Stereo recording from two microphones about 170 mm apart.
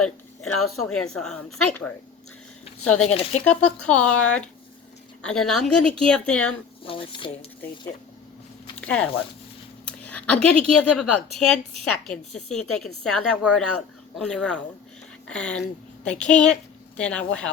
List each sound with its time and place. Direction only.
0.0 s speech: 5° left (ahead or behind)
3.0 s speech: 40° left (ahead or behind)
3.4 s speech: 5° left (ahead or behind)
6.8 s speech: 30° left (ahead or behind)
8.8 s speech: 10° left (ahead or behind)